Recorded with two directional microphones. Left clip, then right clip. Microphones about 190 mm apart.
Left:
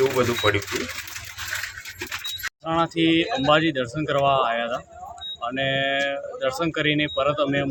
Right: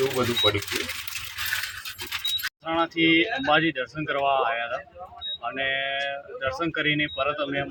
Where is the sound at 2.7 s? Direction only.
25° left (ahead or behind).